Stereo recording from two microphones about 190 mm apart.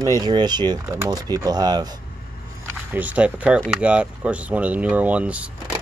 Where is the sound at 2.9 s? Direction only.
10° right (ahead or behind).